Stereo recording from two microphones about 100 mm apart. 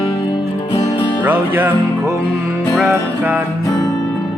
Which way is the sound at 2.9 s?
15° right (ahead or behind).